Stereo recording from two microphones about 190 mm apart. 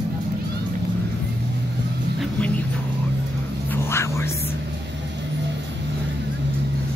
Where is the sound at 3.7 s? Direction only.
15° left (ahead or behind).